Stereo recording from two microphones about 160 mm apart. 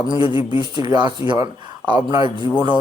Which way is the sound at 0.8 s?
25° right (ahead or behind).